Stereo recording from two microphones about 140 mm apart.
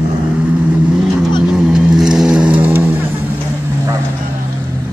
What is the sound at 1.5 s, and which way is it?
Vehicle, 5° right (ahead or behind).